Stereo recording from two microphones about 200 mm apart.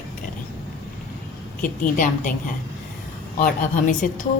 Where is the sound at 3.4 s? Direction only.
40° left (ahead or behind).